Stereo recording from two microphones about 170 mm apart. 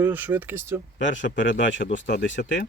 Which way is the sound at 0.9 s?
90° left.